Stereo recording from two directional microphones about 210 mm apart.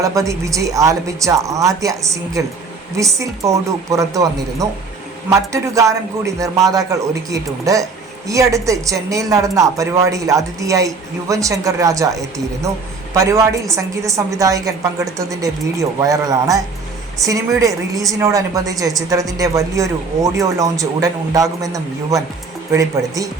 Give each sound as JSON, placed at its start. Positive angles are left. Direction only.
{"t": 0.0, "sound": "a woman's voice", "side_deg": -15}